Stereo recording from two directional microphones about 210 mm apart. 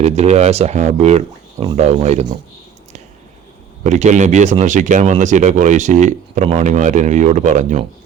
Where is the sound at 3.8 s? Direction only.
35° right (ahead or behind).